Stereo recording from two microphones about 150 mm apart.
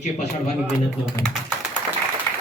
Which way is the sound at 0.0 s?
50° left (ahead or behind).